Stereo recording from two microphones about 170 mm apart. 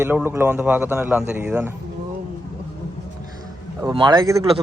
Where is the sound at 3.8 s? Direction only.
25° right (ahead or behind).